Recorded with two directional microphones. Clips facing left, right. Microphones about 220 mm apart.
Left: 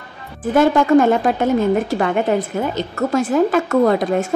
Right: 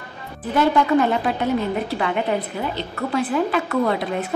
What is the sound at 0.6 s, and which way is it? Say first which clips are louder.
A woman's voice: left 5 dB; 45° left (ahead or behind).